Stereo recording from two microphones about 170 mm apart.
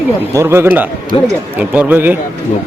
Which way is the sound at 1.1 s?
35° left (ahead or behind).